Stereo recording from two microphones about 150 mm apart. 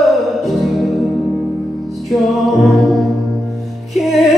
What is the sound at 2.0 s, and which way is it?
Music, centre (ahead or behind).